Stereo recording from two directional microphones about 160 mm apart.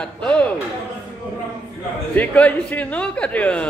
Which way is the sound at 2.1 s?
10° left (ahead or behind).